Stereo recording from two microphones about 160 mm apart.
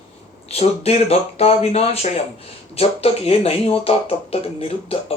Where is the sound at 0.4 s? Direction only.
40° left (ahead or behind).